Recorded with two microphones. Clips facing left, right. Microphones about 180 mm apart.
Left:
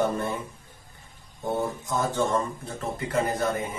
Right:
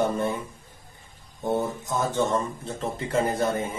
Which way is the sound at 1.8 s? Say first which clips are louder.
Right 1 dB; 20° right (ahead or behind).